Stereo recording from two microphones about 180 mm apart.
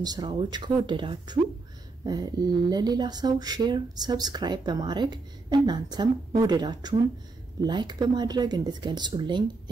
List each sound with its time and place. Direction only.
0.0 s speech: 20° right (ahead or behind)